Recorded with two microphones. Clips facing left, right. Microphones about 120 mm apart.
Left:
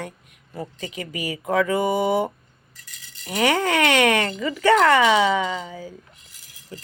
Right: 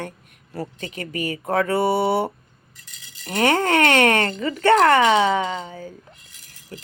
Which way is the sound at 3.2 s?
50° right (ahead or behind).